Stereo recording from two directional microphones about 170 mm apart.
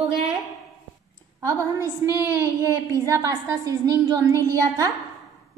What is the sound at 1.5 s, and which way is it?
Speech, 15° left (ahead or behind).